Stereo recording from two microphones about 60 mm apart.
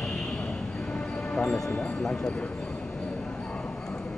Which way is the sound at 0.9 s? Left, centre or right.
Centre.